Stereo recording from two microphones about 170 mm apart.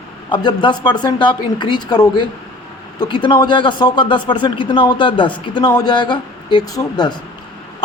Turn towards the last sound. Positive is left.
turn(degrees=25)  # may be behind; listen again after turning